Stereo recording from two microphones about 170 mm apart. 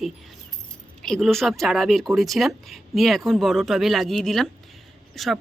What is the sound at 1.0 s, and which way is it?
Speech, centre (ahead or behind).